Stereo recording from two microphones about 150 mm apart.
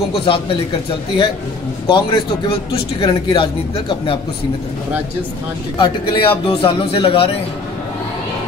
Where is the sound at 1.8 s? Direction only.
35° left (ahead or behind).